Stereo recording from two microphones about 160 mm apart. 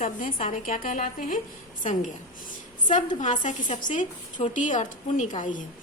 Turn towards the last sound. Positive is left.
turn(degrees=50)  # may be behind; listen again after turning